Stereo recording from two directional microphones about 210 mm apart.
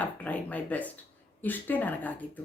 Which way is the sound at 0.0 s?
5° left (ahead or behind).